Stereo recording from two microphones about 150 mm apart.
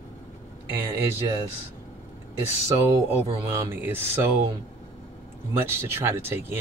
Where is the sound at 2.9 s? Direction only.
20° right (ahead or behind).